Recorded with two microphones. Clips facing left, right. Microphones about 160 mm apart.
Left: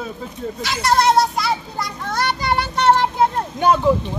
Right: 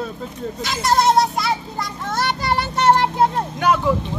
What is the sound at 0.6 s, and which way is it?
Children playing, centre (ahead or behind).